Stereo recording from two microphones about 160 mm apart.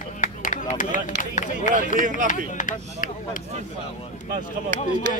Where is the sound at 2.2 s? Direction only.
55° left (ahead or behind).